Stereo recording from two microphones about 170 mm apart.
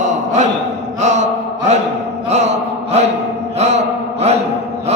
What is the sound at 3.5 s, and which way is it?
Mantra, 40° right (ahead or behind).